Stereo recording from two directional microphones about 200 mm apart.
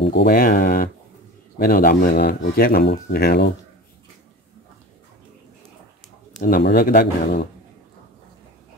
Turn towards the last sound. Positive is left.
turn(degrees=50)  # may be behind; listen again after turning